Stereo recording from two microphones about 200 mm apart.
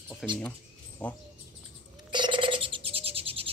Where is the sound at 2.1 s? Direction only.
25° right (ahead or behind).